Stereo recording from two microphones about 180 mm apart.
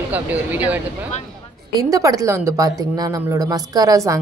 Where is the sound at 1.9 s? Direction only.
20° right (ahead or behind).